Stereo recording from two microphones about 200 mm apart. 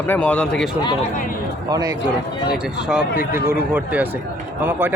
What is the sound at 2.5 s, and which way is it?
Speech, 5° right (ahead or behind).